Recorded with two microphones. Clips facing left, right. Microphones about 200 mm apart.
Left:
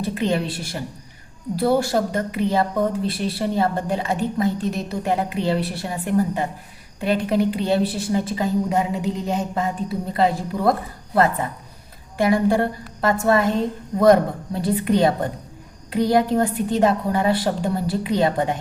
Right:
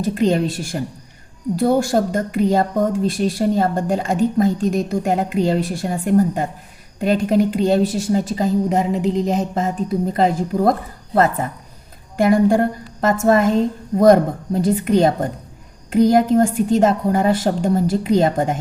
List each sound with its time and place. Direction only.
0.0 s speech: 45° right (ahead or behind)
12.1 s speech: 45° right (ahead or behind)